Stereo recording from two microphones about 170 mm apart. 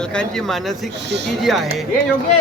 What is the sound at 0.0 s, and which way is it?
A man's voice, 5° left (ahead or behind).